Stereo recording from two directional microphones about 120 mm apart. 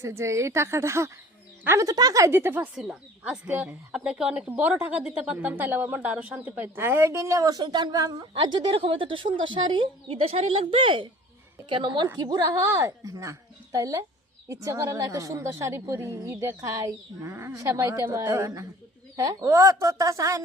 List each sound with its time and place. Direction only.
0.0 s a woman's voice: 25° right (ahead or behind)
2.7 s a woman's voice: 5° right (ahead or behind); by 12.0 s 45° right (ahead or behind)
12.1 s a woman's voice: 30° right (ahead or behind)